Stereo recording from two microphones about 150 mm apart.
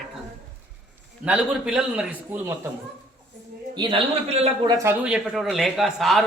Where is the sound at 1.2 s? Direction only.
10° right (ahead or behind).